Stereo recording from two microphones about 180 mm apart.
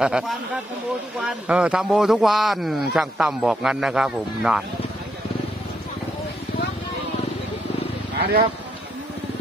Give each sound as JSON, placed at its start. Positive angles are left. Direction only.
{"t": 1.2, "sound": "a man's voice", "side_deg": -5}
{"t": 8.2, "sound": "speech", "side_deg": -60}